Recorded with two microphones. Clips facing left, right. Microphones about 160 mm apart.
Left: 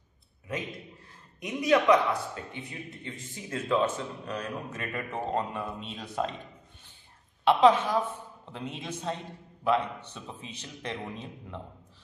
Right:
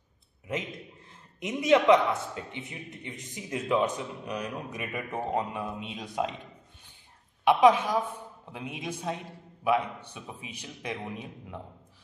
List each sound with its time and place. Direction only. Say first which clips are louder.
1.4 s a man's voice: right 2 dB; 25° right (ahead or behind)
7.4 s a man's voice: even; 10° right (ahead or behind)